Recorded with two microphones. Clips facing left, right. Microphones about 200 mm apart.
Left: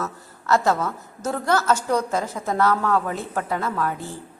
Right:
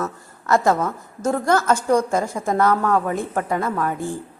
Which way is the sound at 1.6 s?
10° right (ahead or behind).